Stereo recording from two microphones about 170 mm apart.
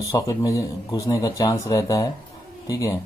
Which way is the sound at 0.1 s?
20° left (ahead or behind).